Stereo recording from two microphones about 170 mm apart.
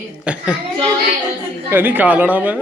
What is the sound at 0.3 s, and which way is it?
Speech, 5° right (ahead or behind).